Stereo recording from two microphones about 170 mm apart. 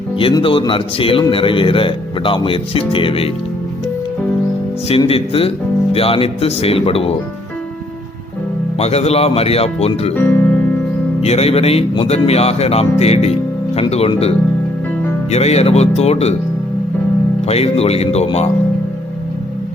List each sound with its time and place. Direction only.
0.2 s speech: 30° left (ahead or behind)
4.9 s speech: 35° left (ahead or behind)
8.8 s speech: 40° left (ahead or behind)
10.2 s music: 10° left (ahead or behind)
11.2 s speech: 40° left (ahead or behind)
17.4 s speech: 35° left (ahead or behind)